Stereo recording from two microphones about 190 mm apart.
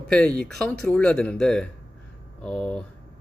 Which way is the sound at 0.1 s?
5° left (ahead or behind).